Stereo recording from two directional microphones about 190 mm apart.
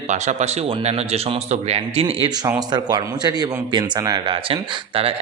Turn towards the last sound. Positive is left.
turn(degrees=-30)  # may be behind; listen again after turning